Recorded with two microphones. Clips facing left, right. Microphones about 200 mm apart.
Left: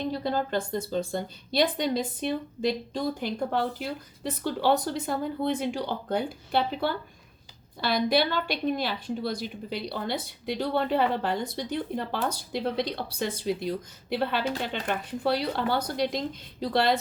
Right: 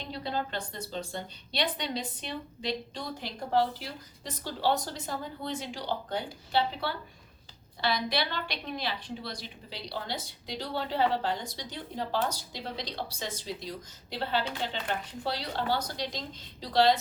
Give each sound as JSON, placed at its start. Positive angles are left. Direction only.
{"t": 0.0, "sound": "a woman's voice", "side_deg": 45}